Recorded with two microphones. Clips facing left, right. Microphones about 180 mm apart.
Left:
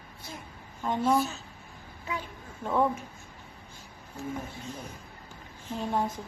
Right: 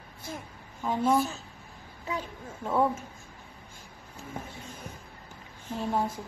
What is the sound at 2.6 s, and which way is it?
Speech, 10° right (ahead or behind).